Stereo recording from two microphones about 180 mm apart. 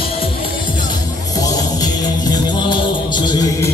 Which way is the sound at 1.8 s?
25° left (ahead or behind).